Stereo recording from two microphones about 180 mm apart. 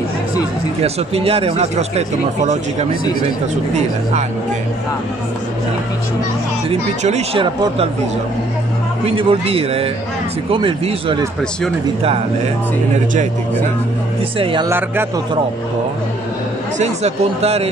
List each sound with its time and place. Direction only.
0.8 s speech: 35° right (ahead or behind)
6.7 s speech: 40° right (ahead or behind)
9.0 s speech: 30° right (ahead or behind)
14.4 s speech: 30° right (ahead or behind)
14.7 s speech: 10° right (ahead or behind)
16.7 s speech: 35° right (ahead or behind)